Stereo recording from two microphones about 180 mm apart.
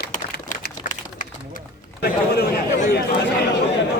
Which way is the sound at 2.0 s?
65° left (ahead or behind).